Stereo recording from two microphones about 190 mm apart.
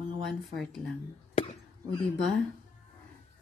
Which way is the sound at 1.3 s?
30° left (ahead or behind).